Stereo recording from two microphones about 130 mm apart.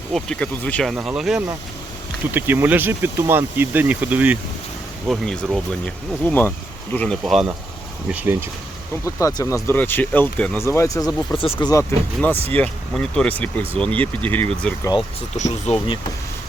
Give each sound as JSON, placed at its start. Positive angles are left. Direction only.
{"t": 0.1, "sound": "speech", "side_deg": 5}
{"t": 2.3, "sound": "speech", "side_deg": -15}
{"t": 5.0, "sound": "speech", "side_deg": 5}
{"t": 6.2, "sound": "speech", "side_deg": 15}
{"t": 7.3, "sound": "speech", "side_deg": 0}
{"t": 8.1, "sound": "speech", "side_deg": -15}
{"t": 9.0, "sound": "speech", "side_deg": 25}
{"t": 10.7, "sound": "speech", "side_deg": 25}
{"t": 15.4, "sound": "speech", "side_deg": 60}